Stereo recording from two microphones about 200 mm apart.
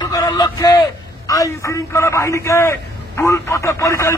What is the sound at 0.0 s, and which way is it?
A man's voice, 15° left (ahead or behind).